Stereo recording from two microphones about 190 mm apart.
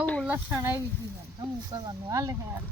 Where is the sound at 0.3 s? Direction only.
10° right (ahead or behind).